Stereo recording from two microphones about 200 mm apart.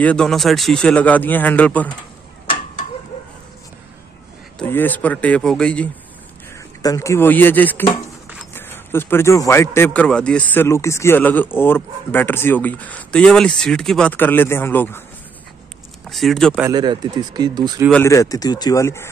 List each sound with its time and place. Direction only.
0.0 s a man's voice: 5° left (ahead or behind)
4.6 s a man's voice: 10° left (ahead or behind)
6.8 s a man's voice: 15° left (ahead or behind)
16.1 s speech: centre (ahead or behind)
16.6 s speech: 20° right (ahead or behind)
18.0 s a man's voice: 15° left (ahead or behind)